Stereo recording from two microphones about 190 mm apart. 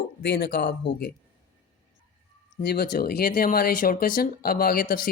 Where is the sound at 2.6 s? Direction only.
55° left (ahead or behind).